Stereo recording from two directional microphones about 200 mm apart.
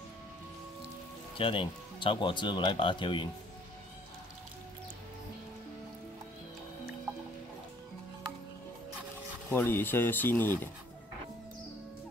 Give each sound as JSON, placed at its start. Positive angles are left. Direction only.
{"t": 1.4, "sound": "speech", "side_deg": 25}
{"t": 9.5, "sound": "speech", "side_deg": 10}